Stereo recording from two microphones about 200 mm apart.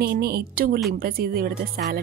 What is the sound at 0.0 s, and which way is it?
Speech, 50° right (ahead or behind).